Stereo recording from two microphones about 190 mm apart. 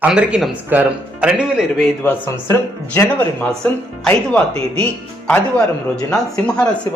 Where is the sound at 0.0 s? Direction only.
5° right (ahead or behind).